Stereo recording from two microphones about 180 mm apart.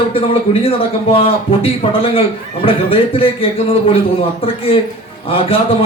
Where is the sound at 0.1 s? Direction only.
30° left (ahead or behind).